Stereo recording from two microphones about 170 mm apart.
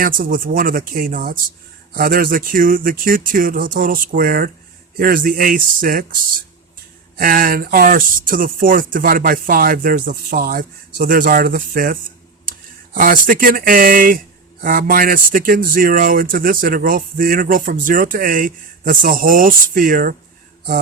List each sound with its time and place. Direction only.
0.0 s speech: 55° right (ahead or behind)
7.2 s speech: 55° right (ahead or behind)